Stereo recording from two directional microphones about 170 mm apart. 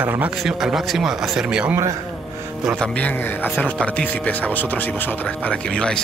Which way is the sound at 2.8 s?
10° left (ahead or behind).